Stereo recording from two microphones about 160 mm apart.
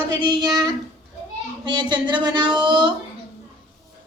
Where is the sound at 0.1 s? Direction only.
25° right (ahead or behind).